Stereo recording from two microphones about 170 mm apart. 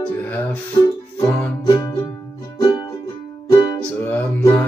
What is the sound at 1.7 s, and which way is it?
Music, 25° left (ahead or behind).